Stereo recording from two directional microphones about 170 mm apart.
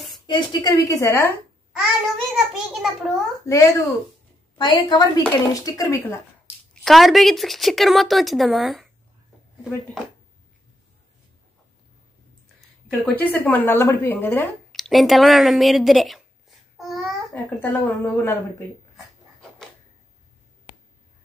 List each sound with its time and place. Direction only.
0.3 s a woman's voice: 25° left (ahead or behind)
2.3 s a woman's voice: 5° right (ahead or behind)
3.4 s a woman's voice: 20° left (ahead or behind)
6.7 s a woman's voice: centre (ahead or behind)
13.0 s a woman's voice: 10° left (ahead or behind)
14.7 s speech: centre (ahead or behind)
17.3 s a woman's voice: 10° left (ahead or behind)